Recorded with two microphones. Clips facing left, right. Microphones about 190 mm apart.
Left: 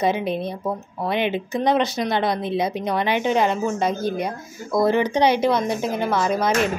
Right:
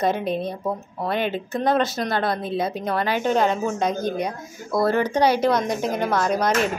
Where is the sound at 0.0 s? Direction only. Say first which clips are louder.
Left 1 dB; 10° left (ahead or behind).